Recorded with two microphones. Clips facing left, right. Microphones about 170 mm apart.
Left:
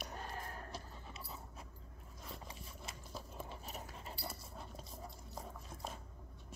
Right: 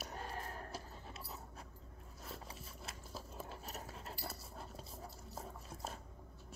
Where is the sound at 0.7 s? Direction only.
5° right (ahead or behind).